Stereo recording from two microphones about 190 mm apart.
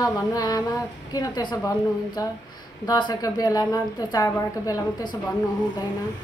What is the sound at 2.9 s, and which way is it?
A woman's voice, 20° left (ahead or behind).